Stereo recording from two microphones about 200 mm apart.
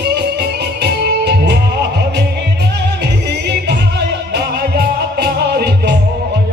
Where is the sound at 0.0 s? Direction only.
55° right (ahead or behind).